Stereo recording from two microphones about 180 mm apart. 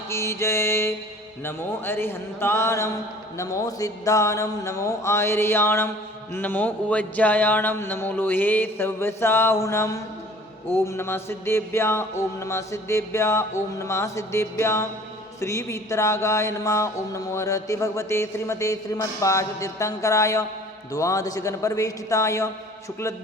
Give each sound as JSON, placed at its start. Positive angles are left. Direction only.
{"t": 0.1, "sound": "mantra", "side_deg": 15}